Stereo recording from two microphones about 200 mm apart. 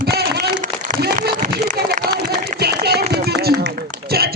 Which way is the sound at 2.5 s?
55° right (ahead or behind).